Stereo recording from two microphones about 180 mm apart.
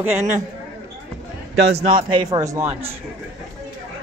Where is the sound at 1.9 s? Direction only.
25° right (ahead or behind).